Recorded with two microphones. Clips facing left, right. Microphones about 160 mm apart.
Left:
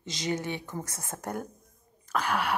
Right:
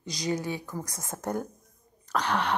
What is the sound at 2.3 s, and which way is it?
Speech, 5° left (ahead or behind).